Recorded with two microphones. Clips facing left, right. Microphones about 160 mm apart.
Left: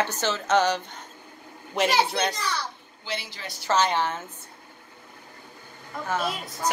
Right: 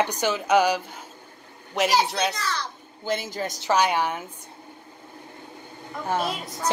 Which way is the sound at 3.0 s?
45° right (ahead or behind).